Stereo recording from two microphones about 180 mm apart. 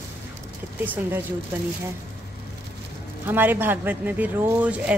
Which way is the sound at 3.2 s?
10° right (ahead or behind).